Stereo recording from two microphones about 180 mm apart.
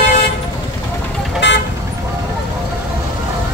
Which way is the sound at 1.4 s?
90° left.